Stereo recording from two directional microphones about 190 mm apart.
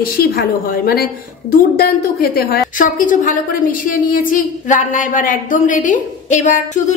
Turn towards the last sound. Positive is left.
turn(degrees=40)  # may be behind; listen again after turning